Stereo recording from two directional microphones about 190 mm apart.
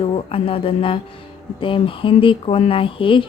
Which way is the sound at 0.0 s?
30° left (ahead or behind).